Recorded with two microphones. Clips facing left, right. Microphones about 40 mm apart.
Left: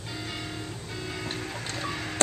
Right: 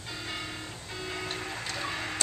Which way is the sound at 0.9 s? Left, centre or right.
Centre.